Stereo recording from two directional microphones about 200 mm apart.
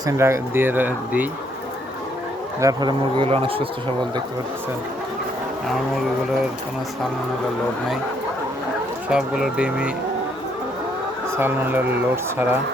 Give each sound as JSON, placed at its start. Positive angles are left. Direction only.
{"t": 0.0, "sound": "speech", "side_deg": -15}
{"t": 2.6, "sound": "speech", "side_deg": -20}
{"t": 9.0, "sound": "speech", "side_deg": -5}
{"t": 11.3, "sound": "speech", "side_deg": -10}